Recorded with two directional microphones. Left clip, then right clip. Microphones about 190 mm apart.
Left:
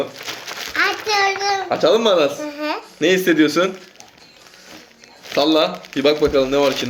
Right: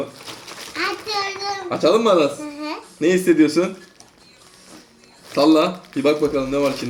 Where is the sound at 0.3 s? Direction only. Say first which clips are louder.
Left 6 dB; 10° right (ahead or behind).